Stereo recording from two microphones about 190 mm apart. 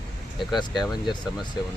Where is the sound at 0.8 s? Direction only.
20° left (ahead or behind).